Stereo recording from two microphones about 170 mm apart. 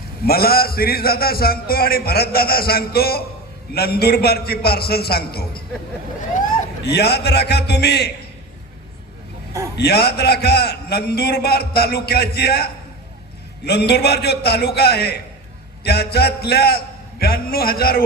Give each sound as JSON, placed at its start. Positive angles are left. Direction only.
{"t": 0.3, "sound": "a man's voice", "side_deg": 65}
{"t": 6.8, "sound": "a man's voice", "side_deg": 75}
{"t": 9.7, "sound": "a man's voice", "side_deg": 70}